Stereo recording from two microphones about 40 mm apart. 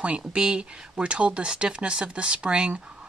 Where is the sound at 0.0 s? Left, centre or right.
Right.